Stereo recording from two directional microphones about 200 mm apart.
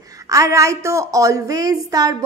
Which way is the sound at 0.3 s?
15° right (ahead or behind).